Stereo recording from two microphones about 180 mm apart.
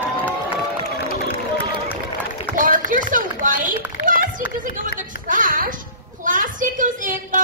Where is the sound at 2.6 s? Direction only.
45° right (ahead or behind).